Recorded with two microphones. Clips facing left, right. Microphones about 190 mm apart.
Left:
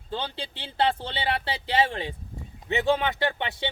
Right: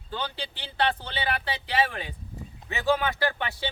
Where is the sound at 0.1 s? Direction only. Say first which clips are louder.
Left 1 dB; 25° left (ahead or behind).